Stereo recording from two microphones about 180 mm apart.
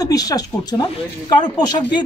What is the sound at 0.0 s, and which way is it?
Speech, 20° left (ahead or behind).